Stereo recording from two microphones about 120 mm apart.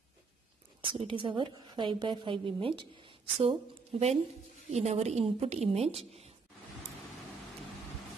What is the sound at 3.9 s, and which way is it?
A woman's voice, 60° right (ahead or behind).